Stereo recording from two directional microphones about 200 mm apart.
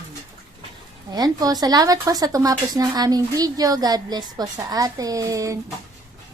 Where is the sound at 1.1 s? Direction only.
20° right (ahead or behind).